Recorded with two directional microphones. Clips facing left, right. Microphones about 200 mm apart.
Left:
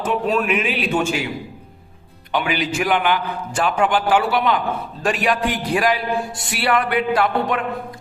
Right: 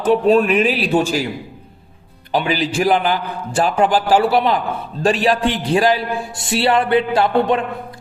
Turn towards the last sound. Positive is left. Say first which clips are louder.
# right 3 dB
turn(degrees=-30)  # may be behind; listen again after turning